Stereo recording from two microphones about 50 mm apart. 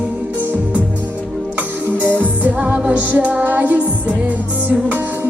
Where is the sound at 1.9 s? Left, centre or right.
Right.